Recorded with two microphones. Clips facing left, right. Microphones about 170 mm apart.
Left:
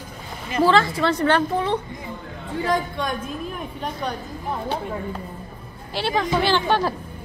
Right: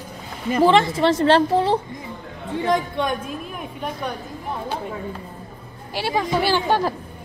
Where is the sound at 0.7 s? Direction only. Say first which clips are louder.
Right 2 dB; 20° right (ahead or behind).